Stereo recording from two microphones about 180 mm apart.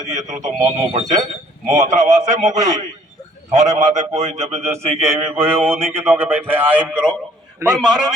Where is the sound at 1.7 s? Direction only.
40° right (ahead or behind).